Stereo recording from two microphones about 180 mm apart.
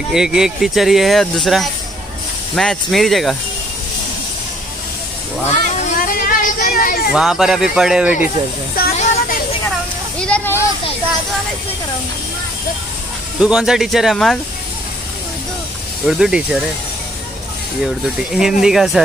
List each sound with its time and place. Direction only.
0.1 s speech: 5° right (ahead or behind)
5.5 s a sound: 45° left (ahead or behind)
7.1 s speech: 5° right (ahead or behind)
8.9 s music: 40° left (ahead or behind)
10.1 s a sound: 5° left (ahead or behind)
13.4 s speech: 5° right (ahead or behind)
16.1 s speech: 5° right (ahead or behind)
18.0 s speech: 5° right (ahead or behind)